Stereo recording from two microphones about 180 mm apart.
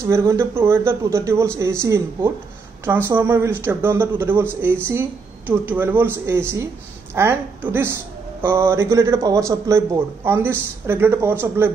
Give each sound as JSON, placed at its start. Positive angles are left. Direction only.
{"t": 0.0, "sound": "a man's voice", "side_deg": -15}